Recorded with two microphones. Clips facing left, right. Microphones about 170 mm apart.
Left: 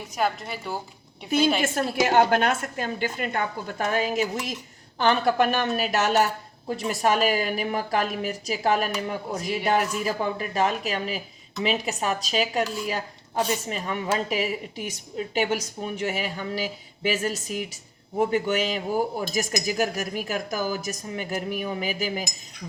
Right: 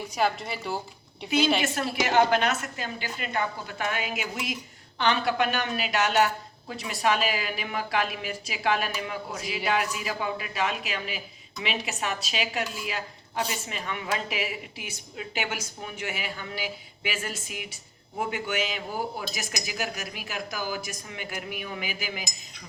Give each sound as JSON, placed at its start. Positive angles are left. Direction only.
{"t": 0.1, "sound": "a woman's voice", "side_deg": 0}
{"t": 1.6, "sound": "a woman's voice", "side_deg": 50}
{"t": 16.0, "sound": "a woman's voice", "side_deg": 40}